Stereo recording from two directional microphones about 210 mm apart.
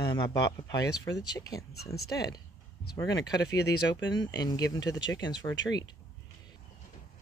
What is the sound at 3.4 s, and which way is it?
Speech, 55° left (ahead or behind).